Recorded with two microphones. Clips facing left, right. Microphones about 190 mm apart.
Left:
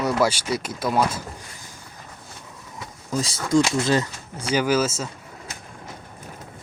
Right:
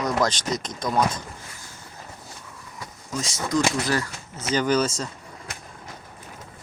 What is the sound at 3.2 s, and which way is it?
Speech, 35° left (ahead or behind).